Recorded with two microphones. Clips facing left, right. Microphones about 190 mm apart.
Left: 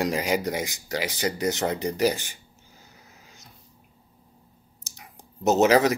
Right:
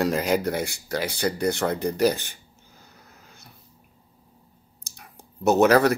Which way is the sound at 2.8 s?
60° right (ahead or behind).